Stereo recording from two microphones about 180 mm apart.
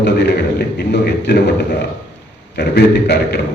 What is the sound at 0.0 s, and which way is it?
A man's voice, 70° left (ahead or behind).